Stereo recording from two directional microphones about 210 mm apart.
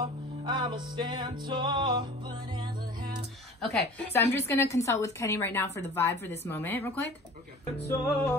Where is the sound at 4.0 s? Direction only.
10° left (ahead or behind).